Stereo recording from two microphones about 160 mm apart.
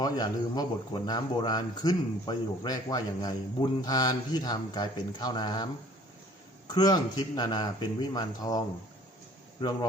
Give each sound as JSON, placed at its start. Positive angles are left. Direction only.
{"t": 0.0, "sound": "speech", "side_deg": 25}
{"t": 6.7, "sound": "speech", "side_deg": 25}